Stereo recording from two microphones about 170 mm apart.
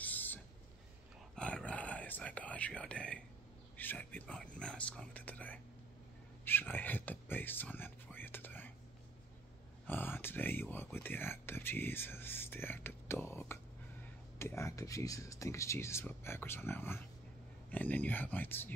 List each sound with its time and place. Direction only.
0.0 s a sound: 10° left (ahead or behind)
1.3 s whispering: 5° left (ahead or behind)
3.7 s speech: 10° left (ahead or behind)
9.8 s speech: 10° left (ahead or behind)